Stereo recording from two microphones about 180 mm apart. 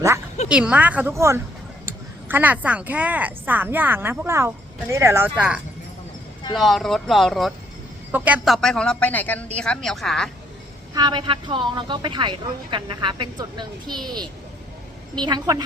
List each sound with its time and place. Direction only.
0.4 s a woman's voice: 5° right (ahead or behind)
6.6 s speech: centre (ahead or behind)
10.9 s a woman's voice: 25° right (ahead or behind)